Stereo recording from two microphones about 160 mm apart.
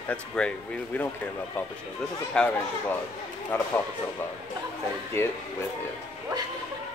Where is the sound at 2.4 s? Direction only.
5° left (ahead or behind).